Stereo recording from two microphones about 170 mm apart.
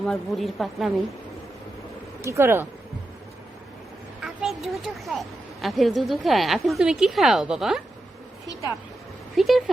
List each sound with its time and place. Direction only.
0.0 s a woman's voice: centre (ahead or behind)
2.2 s speech: 15° right (ahead or behind)
4.2 s a sound: centre (ahead or behind)
5.6 s a woman's voice: centre (ahead or behind)
9.3 s a woman's voice: centre (ahead or behind)